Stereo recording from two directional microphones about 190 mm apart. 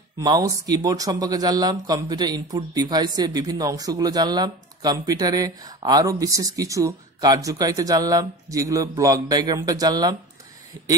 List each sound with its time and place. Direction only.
0.2 s speech: 20° right (ahead or behind)